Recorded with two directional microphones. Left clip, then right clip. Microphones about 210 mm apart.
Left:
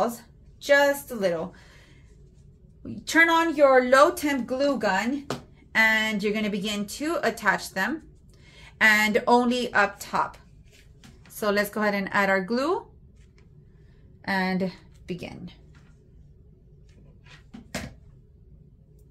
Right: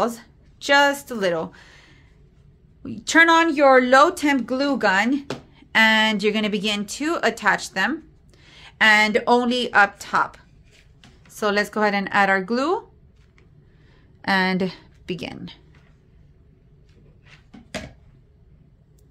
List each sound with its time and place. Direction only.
0.0 s speech: 40° right (ahead or behind)
14.2 s a woman's voice: 40° right (ahead or behind)